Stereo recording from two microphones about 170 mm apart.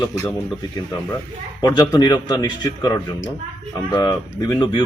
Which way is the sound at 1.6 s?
20° left (ahead or behind).